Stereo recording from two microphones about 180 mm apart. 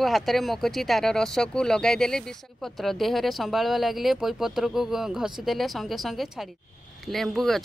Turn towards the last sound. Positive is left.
turn(degrees=0)  # may be behind; listen again after turning